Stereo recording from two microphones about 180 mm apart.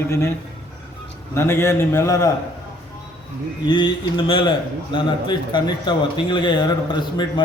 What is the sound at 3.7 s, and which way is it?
A man's voice, 25° left (ahead or behind).